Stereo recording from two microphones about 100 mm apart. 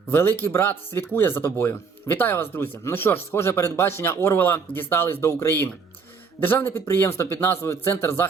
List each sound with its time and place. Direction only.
0.1 s speech: 25° left (ahead or behind)